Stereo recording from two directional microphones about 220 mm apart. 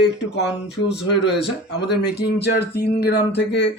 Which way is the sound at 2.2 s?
50° left (ahead or behind).